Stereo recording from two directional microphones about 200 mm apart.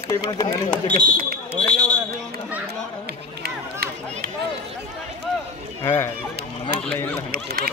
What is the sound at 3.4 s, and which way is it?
Run, 50° right (ahead or behind).